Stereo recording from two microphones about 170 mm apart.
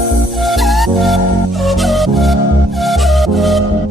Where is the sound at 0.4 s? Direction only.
Centre (ahead or behind).